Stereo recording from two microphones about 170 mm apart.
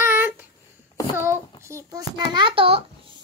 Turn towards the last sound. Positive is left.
turn(degrees=-30)  # may be behind; listen again after turning